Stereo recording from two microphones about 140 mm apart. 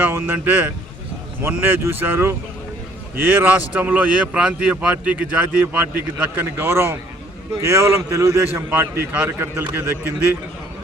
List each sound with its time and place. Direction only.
0.0 s a man's voice: 15° right (ahead or behind)